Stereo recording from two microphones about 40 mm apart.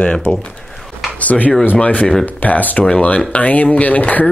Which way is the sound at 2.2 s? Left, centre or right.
Left.